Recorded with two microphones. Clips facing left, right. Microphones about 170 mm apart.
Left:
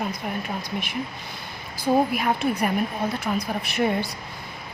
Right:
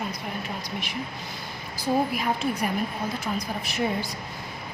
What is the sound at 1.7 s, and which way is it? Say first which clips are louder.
Speech: left 4 dB; 60° left (ahead or behind).